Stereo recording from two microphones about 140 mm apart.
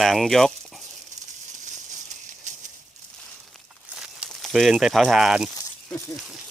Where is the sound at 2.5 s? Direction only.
60° right (ahead or behind).